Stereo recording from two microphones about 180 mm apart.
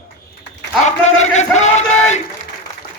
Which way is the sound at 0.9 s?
40° left (ahead or behind).